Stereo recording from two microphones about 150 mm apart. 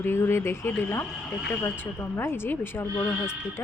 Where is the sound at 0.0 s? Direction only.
15° left (ahead or behind).